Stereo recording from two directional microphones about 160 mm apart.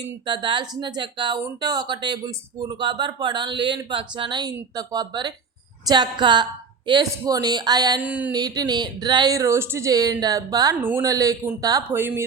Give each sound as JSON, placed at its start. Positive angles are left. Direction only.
{"t": 0.0, "sound": "speech", "side_deg": -25}
{"t": 8.0, "sound": "speech", "side_deg": -10}
{"t": 8.3, "sound": "speech", "side_deg": -25}